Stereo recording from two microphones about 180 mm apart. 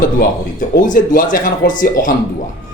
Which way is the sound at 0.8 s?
50° left (ahead or behind).